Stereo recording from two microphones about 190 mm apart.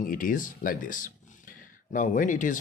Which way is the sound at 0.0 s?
45° left (ahead or behind).